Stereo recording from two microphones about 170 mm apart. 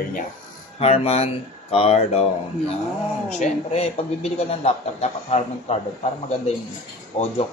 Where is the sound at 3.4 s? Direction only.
40° left (ahead or behind).